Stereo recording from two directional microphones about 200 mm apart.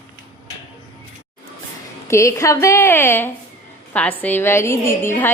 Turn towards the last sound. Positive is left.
turn(degrees=10)  # may be behind; listen again after turning